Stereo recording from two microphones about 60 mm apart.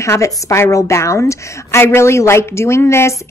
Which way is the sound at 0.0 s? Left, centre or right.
Left.